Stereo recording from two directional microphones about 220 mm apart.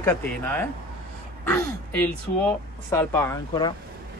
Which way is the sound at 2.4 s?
10° left (ahead or behind).